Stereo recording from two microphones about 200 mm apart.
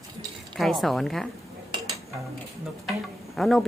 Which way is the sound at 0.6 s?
Centre (ahead or behind).